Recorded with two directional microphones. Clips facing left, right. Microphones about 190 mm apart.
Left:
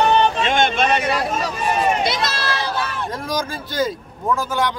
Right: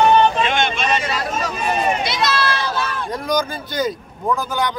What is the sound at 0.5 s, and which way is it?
Vehicle, 50° left (ahead or behind).